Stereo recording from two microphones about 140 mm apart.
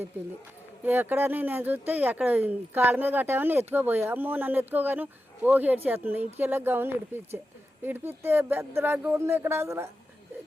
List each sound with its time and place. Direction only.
0.9 s speech: 15° right (ahead or behind)